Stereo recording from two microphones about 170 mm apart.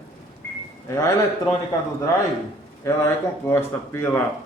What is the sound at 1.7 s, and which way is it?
A man's voice, 20° left (ahead or behind).